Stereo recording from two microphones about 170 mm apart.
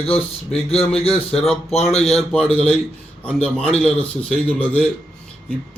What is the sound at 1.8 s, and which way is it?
Speech, 40° left (ahead or behind).